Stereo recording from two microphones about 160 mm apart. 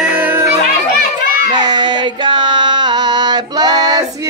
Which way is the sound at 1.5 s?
25° right (ahead or behind).